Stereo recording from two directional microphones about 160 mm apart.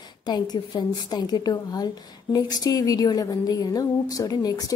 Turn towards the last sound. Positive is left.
turn(degrees=20)  # may be behind; listen again after turning